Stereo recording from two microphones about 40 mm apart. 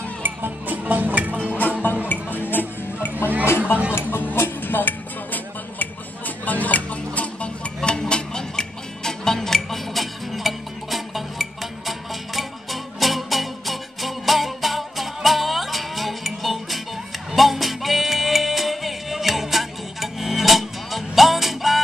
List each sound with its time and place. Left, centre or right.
0.2 s music: right
1.8 s music: left
3.2 s music: left
3.5 s music: left
7.2 s music: left; by 21.8 s centre